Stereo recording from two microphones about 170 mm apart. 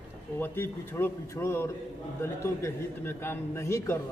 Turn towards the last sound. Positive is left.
turn(degrees=15)  # may be behind; listen again after turning